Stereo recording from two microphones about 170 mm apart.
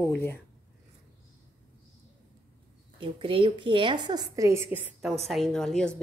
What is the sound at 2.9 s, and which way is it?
A woman's voice, 30° right (ahead or behind).